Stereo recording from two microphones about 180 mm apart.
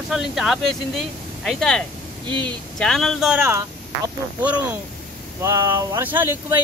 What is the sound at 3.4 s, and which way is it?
Speech, 15° right (ahead or behind).